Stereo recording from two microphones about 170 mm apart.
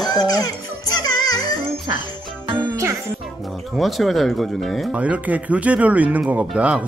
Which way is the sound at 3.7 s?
Centre (ahead or behind).